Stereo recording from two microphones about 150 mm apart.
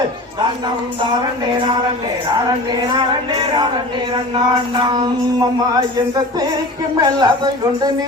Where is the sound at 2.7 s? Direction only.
25° right (ahead or behind).